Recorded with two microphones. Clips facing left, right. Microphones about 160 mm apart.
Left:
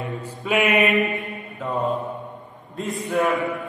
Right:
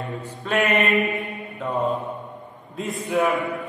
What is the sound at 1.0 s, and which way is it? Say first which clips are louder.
Mantra: even; 20° right (ahead or behind).